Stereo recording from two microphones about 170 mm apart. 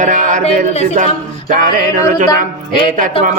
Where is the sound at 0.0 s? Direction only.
45° right (ahead or behind).